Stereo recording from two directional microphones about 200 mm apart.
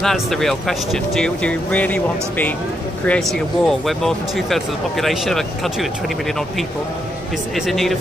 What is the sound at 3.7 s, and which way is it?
Speech, centre (ahead or behind).